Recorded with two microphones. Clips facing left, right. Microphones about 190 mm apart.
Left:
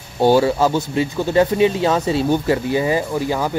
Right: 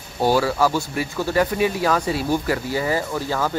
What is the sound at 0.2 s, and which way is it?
Speech, 25° left (ahead or behind).